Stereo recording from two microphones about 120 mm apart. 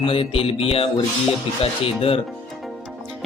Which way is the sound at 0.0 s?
50° left (ahead or behind).